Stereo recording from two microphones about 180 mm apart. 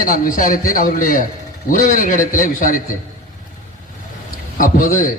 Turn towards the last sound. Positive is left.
turn(degrees=50)  # may be behind; listen again after turning